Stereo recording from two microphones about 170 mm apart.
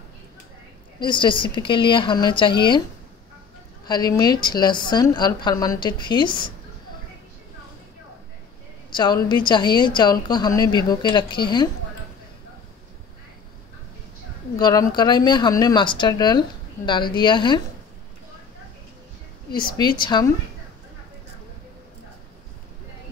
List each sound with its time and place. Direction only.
0.9 s speech: 25° left (ahead or behind)
3.8 s speech: 25° left (ahead or behind)
8.9 s speech: 25° left (ahead or behind)
14.6 s speech: 20° left (ahead or behind)
19.5 s speech: 25° left (ahead or behind)